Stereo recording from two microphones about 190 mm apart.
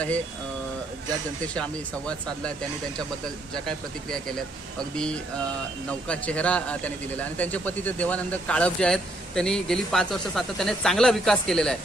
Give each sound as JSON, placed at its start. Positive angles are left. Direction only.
{"t": 1.5, "sound": "a man's voice", "side_deg": 5}
{"t": 3.5, "sound": "a man's voice", "side_deg": 5}